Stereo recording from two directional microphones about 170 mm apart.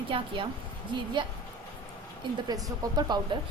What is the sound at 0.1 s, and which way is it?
Speech, 30° right (ahead or behind).